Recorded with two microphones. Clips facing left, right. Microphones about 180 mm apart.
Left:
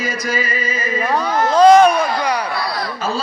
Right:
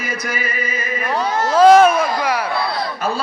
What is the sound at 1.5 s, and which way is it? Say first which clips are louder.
Speech: even; 5° right (ahead or behind).